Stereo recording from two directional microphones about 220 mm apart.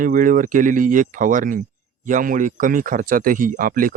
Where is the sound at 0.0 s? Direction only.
35° right (ahead or behind).